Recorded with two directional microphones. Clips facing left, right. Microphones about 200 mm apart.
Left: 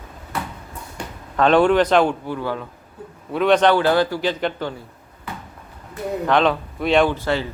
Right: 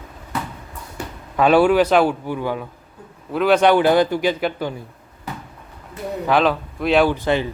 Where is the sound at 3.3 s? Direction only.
5° right (ahead or behind).